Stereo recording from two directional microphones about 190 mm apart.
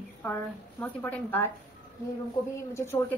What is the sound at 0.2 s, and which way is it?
A woman's voice, 10° left (ahead or behind).